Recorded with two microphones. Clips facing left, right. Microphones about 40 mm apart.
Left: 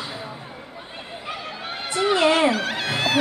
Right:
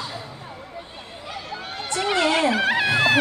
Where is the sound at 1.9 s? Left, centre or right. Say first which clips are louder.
Left 2 dB; centre.